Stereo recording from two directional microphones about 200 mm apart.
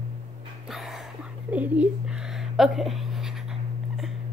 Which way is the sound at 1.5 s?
5° right (ahead or behind).